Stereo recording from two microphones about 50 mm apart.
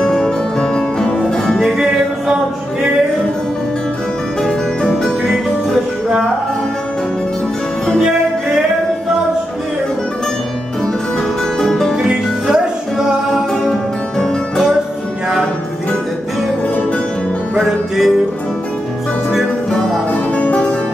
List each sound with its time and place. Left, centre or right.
0.0 s music: centre
1.6 s music: centre
4.4 s music: centre
11.5 s music: centre
11.9 s music: centre
17.6 s music: centre
20.3 s music: left